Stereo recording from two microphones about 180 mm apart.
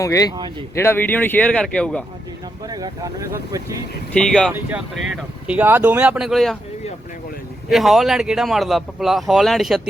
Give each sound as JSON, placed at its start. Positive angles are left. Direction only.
{"t": 0.0, "sound": "speech", "side_deg": 15}
{"t": 2.6, "sound": "speech", "side_deg": -20}
{"t": 4.1, "sound": "speech", "side_deg": 5}
{"t": 7.7, "sound": "speech", "side_deg": 0}